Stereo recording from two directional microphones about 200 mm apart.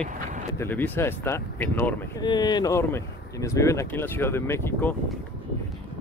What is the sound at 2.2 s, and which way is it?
Speech, 20° left (ahead or behind).